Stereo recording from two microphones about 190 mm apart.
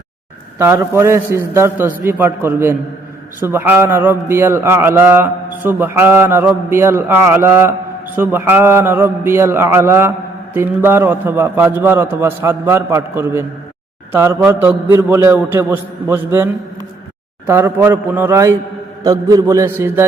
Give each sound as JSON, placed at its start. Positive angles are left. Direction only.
{"t": 0.6, "sound": "speech", "side_deg": -15}